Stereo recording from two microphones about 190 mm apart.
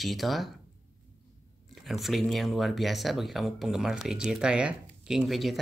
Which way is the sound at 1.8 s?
Centre (ahead or behind).